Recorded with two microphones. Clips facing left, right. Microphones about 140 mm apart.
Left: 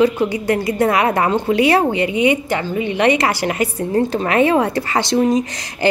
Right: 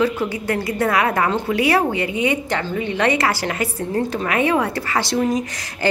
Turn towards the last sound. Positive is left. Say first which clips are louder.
# left 4 dB
turn(degrees=20)  # may be behind; listen again after turning